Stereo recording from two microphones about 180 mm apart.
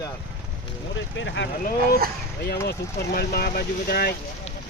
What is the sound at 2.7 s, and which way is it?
Speech, 60° left (ahead or behind).